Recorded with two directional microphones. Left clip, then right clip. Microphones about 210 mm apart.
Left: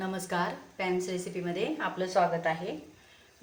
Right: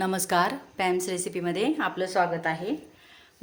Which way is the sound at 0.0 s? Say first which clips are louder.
Right 8 dB; 50° right (ahead or behind).